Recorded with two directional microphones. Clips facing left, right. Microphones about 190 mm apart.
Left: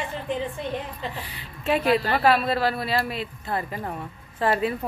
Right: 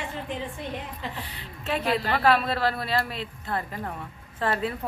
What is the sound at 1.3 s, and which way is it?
A woman's voice, 10° left (ahead or behind).